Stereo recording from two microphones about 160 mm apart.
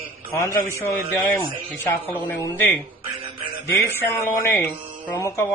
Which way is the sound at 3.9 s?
15° left (ahead or behind).